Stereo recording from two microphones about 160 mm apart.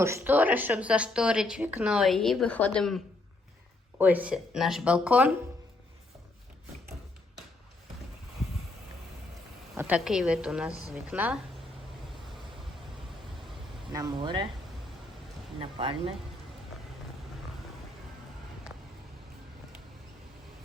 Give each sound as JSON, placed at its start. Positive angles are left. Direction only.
{"t": 0.0, "sound": "a woman's voice", "side_deg": -15}
{"t": 3.9, "sound": "speech", "side_deg": -10}
{"t": 9.7, "sound": "a woman's voice", "side_deg": -10}
{"t": 13.9, "sound": "speech", "side_deg": -25}
{"t": 15.6, "sound": "speech", "side_deg": -35}